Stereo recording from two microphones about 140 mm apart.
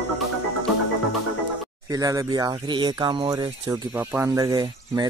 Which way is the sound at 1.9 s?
25° right (ahead or behind).